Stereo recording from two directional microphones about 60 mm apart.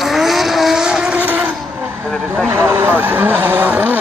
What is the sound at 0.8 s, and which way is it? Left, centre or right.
Vehicle, centre.